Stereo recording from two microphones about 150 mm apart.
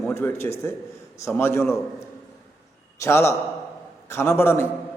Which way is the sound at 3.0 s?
15° left (ahead or behind).